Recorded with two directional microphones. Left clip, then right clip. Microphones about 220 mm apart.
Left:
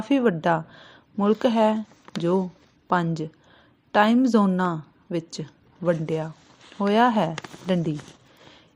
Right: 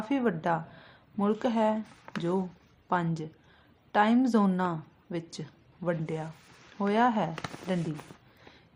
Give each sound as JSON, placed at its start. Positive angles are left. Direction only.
{"t": 0.1, "sound": "speech", "side_deg": 25}
{"t": 2.8, "sound": "a woman's voice", "side_deg": 25}